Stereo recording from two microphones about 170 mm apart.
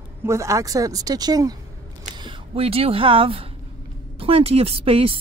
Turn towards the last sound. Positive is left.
turn(degrees=-35)  # may be behind; listen again after turning